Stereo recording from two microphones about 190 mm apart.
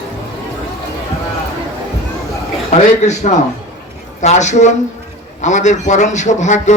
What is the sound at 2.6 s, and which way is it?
A man's voice, 35° left (ahead or behind).